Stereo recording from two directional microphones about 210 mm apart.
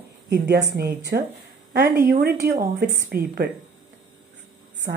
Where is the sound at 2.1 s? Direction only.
45° right (ahead or behind).